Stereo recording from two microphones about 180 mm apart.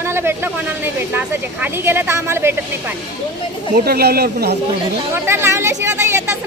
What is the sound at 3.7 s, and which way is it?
Speech, 60° right (ahead or behind).